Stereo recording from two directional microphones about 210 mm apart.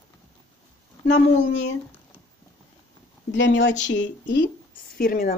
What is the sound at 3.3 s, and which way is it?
Speech, 60° left (ahead or behind).